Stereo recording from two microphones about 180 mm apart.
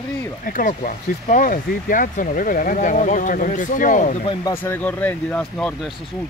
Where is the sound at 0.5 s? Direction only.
50° left (ahead or behind).